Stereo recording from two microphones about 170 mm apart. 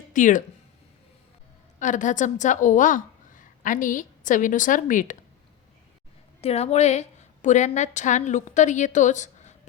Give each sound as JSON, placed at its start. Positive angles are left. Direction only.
{"t": 0.1, "sound": "speech", "side_deg": 50}
{"t": 1.8, "sound": "a woman's voice", "side_deg": 50}
{"t": 6.4, "sound": "a woman's voice", "side_deg": 40}